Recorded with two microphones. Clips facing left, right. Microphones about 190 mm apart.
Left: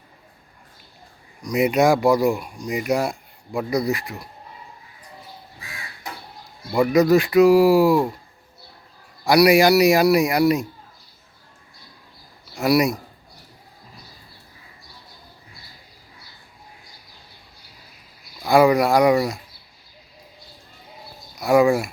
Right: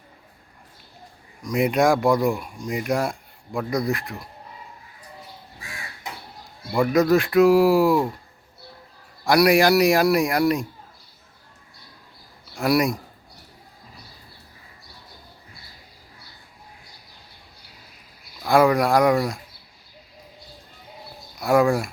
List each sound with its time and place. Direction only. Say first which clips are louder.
1.5 s speech: left 2 dB; centre (ahead or behind)
6.7 s speech: left 2 dB; centre (ahead or behind)
9.2 s speech: left 2 dB; 5° left (ahead or behind)
12.5 s speech: left 2 dB; 5° left (ahead or behind)
18.4 s speech: left 2 dB; 5° left (ahead or behind)
21.4 s speech: left 2 dB; centre (ahead or behind)